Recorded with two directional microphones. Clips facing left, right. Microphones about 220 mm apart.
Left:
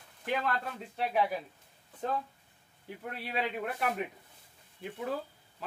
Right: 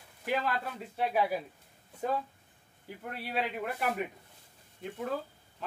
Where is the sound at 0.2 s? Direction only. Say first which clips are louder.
Right 1 dB; 5° right (ahead or behind).